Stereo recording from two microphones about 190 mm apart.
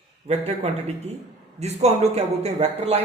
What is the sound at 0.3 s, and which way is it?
Speech, 35° right (ahead or behind).